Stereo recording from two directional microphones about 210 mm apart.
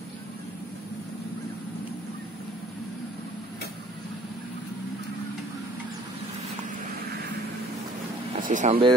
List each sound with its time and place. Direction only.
8.4 s speech: 35° right (ahead or behind)